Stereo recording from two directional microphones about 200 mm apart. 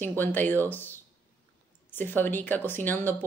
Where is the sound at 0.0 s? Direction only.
10° left (ahead or behind).